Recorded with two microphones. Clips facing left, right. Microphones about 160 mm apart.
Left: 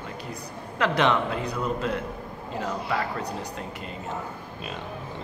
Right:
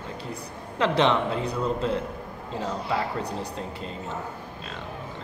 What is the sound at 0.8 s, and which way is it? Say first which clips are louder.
A man's voice: right 1 dB; 25° right (ahead or behind).